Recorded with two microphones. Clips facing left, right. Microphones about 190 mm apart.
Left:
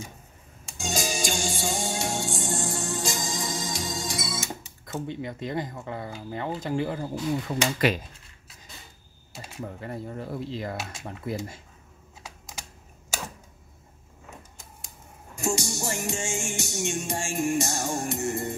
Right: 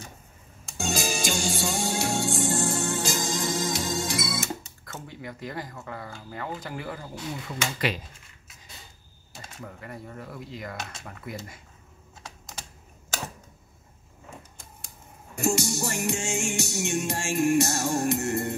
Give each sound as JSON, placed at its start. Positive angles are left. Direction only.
{"t": 0.7, "sound": "music", "side_deg": -65}
{"t": 4.9, "sound": "speech", "side_deg": 25}
{"t": 9.6, "sound": "speech", "side_deg": 30}
{"t": 15.3, "sound": "music", "side_deg": -65}